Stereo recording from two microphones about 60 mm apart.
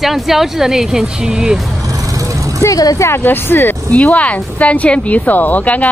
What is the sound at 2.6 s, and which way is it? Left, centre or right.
Speech, left.